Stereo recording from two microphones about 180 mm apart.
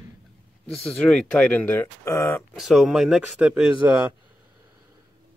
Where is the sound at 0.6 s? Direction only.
5° left (ahead or behind).